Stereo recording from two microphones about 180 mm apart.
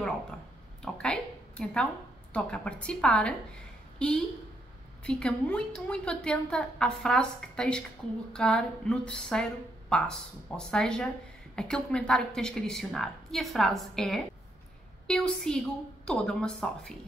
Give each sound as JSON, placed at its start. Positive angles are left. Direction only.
{"t": 0.9, "sound": "a woman's voice", "side_deg": 5}